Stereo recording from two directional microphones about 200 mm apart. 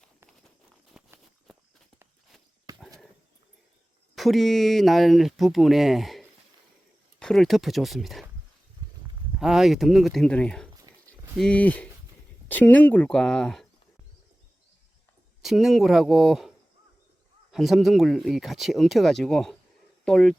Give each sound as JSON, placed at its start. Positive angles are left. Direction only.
{"t": 0.9, "sound": "a sound", "side_deg": 0}
{"t": 2.7, "sound": "a sound", "side_deg": -15}
{"t": 4.1, "sound": "speech", "side_deg": 0}
{"t": 9.4, "sound": "speech", "side_deg": 0}
{"t": 15.4, "sound": "speech", "side_deg": 0}
{"t": 17.5, "sound": "speech", "side_deg": 0}